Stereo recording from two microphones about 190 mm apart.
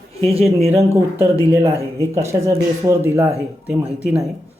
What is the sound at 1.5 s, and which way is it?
Speech, 15° right (ahead or behind).